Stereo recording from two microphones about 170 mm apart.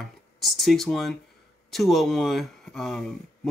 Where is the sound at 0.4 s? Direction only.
Centre (ahead or behind).